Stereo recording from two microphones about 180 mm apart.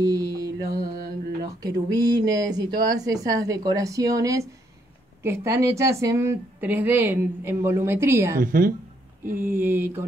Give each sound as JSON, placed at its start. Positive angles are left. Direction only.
{"t": 0.0, "sound": "mantra", "side_deg": -20}
{"t": 1.4, "sound": "a woman's voice", "side_deg": -20}
{"t": 8.4, "sound": "a woman's voice", "side_deg": -50}
{"t": 9.4, "sound": "a woman's voice", "side_deg": -10}